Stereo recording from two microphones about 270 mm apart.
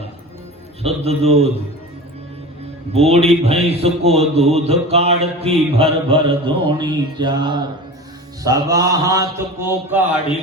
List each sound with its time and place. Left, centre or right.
0.8 s a man's voice: right
2.9 s a man's voice: right
8.4 s mantra: centre